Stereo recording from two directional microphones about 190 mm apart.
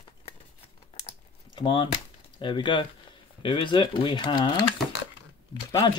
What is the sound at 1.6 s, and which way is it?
Speech, 25° left (ahead or behind).